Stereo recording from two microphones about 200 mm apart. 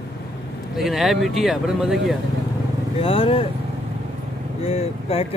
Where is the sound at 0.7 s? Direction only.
Centre (ahead or behind).